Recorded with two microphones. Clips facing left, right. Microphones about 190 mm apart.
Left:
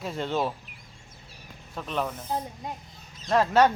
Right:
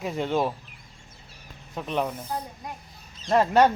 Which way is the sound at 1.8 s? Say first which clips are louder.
Right 3 dB; 15° right (ahead or behind).